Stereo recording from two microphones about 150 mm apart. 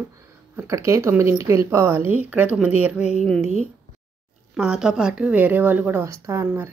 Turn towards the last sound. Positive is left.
turn(degrees=-20)  # may be behind; listen again after turning